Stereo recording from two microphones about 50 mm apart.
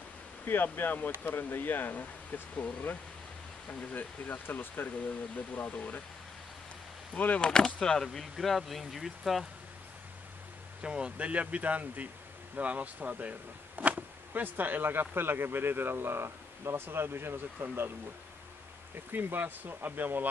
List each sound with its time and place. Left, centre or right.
0.5 s speech: left
7.2 s speech: left
7.4 s speech: centre
10.8 s speech: centre; by 17.9 s right
19.1 s speech: right